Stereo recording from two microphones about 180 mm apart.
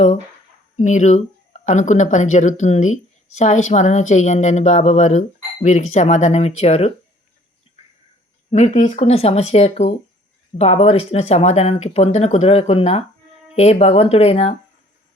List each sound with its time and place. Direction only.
0.8 s speech: 40° left (ahead or behind)
8.4 s speech: 40° left (ahead or behind)